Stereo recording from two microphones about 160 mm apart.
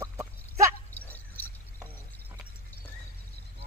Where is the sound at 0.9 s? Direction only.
10° left (ahead or behind).